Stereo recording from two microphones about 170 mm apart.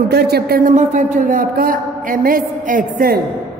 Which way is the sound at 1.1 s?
55° right (ahead or behind).